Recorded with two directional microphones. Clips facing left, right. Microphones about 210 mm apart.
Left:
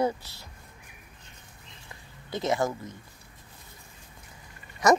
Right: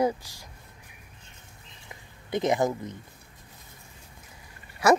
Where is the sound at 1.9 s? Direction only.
20° right (ahead or behind).